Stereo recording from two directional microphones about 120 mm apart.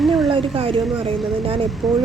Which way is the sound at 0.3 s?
45° right (ahead or behind).